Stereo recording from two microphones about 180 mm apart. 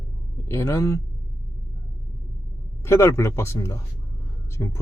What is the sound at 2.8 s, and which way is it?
A man's voice, 15° left (ahead or behind).